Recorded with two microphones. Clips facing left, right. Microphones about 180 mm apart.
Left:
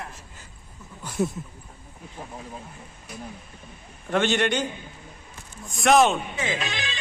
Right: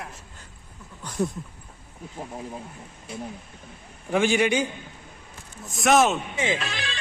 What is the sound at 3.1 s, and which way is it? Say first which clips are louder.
Speech: right 4 dB; 25° right (ahead or behind).